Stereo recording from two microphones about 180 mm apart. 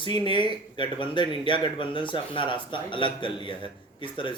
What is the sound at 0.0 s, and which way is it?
Speech, 25° left (ahead or behind).